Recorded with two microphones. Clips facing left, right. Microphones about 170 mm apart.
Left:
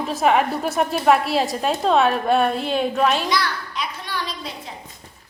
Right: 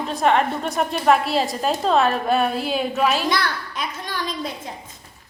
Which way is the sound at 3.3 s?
50° right (ahead or behind).